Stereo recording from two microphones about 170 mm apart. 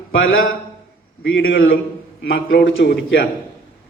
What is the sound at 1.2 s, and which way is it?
Speech, 90° left.